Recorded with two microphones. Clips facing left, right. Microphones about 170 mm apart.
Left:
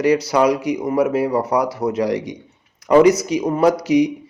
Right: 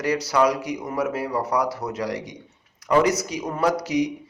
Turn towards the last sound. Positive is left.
turn(degrees=15)  # may be behind; listen again after turning